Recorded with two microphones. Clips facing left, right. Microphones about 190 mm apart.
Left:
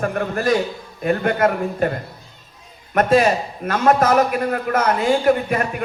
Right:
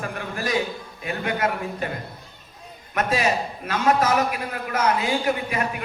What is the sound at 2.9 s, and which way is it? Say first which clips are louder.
Speech: left 7 dB; 50° left (ahead or behind).